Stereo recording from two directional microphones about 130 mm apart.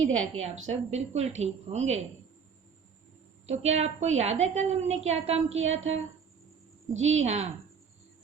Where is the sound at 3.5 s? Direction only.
55° right (ahead or behind).